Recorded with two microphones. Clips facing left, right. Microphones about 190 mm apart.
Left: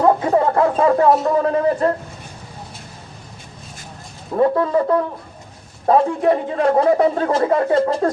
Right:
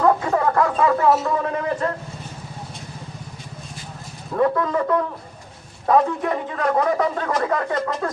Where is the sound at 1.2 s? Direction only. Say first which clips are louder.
Left 6 dB; 35° left (ahead or behind).